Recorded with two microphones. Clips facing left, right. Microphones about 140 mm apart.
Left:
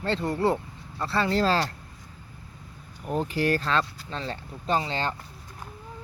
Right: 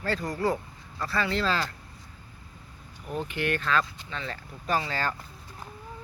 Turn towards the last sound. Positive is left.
turn(degrees=25)  # may be behind; listen again after turning